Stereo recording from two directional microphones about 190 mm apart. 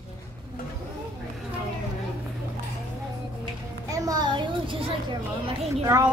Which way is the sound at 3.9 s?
20° right (ahead or behind).